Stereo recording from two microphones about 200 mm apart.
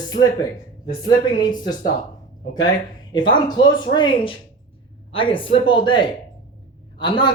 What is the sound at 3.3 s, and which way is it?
A woman's voice, 20° left (ahead or behind).